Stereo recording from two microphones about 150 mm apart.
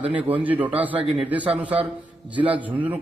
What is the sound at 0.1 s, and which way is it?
A man's voice, 10° right (ahead or behind).